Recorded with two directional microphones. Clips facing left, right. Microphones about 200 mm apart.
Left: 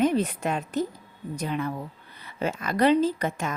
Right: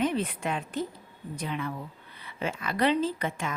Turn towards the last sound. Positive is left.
turn(degrees=40)  # may be behind; listen again after turning